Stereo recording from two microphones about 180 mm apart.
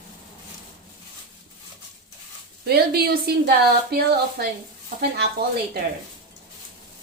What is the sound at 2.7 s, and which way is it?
A woman's voice, 60° right (ahead or behind).